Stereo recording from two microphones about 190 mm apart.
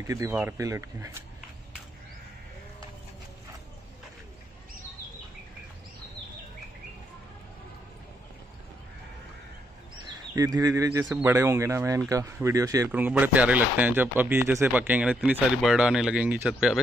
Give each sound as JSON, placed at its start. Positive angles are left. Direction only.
{"t": 0.0, "sound": "speech", "side_deg": -15}
{"t": 10.3, "sound": "speech", "side_deg": -20}